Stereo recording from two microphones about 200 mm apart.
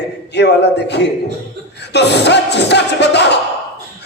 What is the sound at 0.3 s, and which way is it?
Music, 55° left (ahead or behind).